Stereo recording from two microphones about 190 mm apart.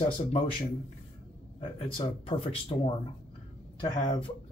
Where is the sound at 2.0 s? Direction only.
30° left (ahead or behind).